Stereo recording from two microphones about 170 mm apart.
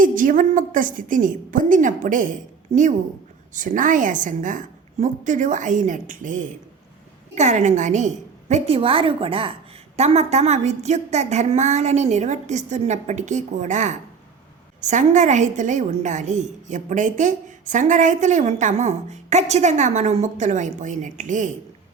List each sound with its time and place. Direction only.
0.0 s a woman's voice: 50° right (ahead or behind)